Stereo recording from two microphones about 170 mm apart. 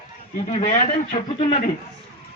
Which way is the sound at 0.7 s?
50° left (ahead or behind).